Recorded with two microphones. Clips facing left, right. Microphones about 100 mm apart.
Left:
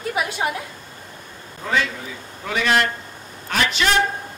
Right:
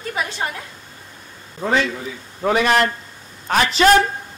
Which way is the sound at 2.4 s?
40° right (ahead or behind).